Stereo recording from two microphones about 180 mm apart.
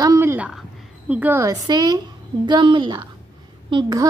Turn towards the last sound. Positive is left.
turn(degrees=-25)  # may be behind; listen again after turning